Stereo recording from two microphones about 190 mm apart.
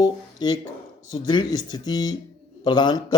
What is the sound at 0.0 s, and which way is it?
A man's voice, 20° left (ahead or behind).